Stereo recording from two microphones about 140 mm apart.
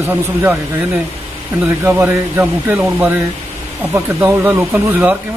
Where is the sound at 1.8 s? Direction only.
15° right (ahead or behind).